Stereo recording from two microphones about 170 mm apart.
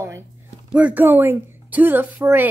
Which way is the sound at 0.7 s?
5° right (ahead or behind).